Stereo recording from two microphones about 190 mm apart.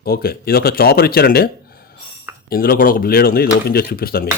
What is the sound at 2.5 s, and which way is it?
Speech, 50° left (ahead or behind).